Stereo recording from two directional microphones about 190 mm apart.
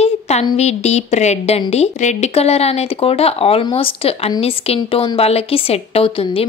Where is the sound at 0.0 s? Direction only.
35° left (ahead or behind).